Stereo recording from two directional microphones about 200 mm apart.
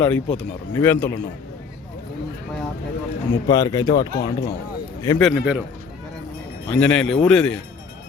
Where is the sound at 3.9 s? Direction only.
55° left (ahead or behind).